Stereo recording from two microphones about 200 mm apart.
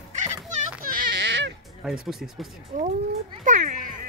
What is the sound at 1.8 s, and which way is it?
Speech, centre (ahead or behind).